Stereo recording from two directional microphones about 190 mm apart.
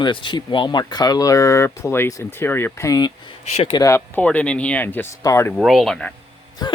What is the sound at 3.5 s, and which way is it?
Speech, 30° left (ahead or behind).